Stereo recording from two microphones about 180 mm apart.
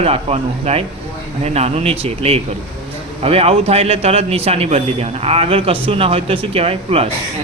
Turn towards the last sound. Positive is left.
turn(degrees=-35)  # may be behind; listen again after turning